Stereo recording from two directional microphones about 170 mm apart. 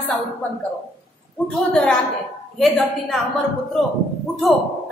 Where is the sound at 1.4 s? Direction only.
5° left (ahead or behind).